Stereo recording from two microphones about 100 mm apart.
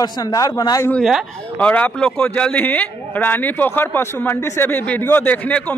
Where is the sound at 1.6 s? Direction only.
15° left (ahead or behind).